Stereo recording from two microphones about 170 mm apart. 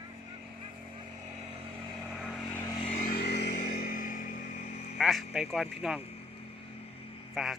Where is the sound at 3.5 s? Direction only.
55° left (ahead or behind).